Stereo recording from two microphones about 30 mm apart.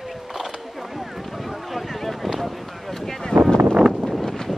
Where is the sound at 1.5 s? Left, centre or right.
Centre.